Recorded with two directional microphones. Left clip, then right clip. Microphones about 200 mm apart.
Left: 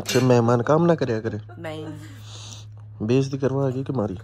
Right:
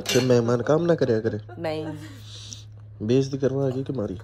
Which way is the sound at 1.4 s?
45° right (ahead or behind).